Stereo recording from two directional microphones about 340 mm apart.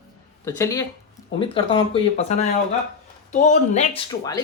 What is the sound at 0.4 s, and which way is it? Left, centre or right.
Speech, centre.